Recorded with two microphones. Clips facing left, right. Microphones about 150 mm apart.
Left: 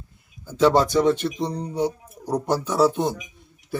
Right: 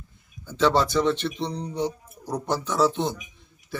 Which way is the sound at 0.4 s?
10° left (ahead or behind).